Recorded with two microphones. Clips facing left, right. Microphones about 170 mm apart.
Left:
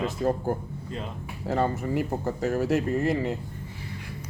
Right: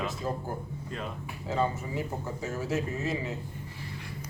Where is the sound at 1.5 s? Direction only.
60° left (ahead or behind).